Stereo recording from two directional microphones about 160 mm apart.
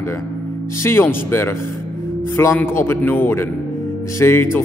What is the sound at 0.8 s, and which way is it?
A man's voice, 15° left (ahead or behind).